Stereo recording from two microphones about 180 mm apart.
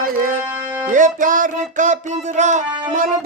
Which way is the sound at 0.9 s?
45° right (ahead or behind).